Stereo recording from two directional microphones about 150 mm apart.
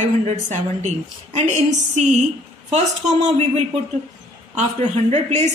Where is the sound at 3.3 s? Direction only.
45° right (ahead or behind).